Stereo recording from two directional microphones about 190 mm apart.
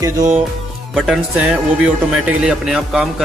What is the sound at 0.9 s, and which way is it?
Speech, 5° right (ahead or behind).